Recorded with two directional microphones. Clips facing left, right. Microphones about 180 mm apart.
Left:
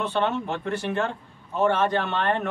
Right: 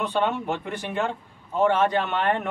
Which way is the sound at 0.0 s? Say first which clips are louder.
Even; 15° right (ahead or behind).